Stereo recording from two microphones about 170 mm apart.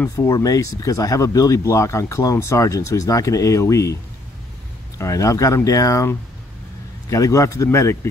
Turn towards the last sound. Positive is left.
turn(degrees=15)  # may be behind; listen again after turning